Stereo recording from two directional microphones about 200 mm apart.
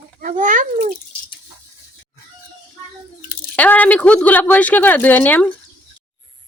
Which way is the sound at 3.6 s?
10° left (ahead or behind).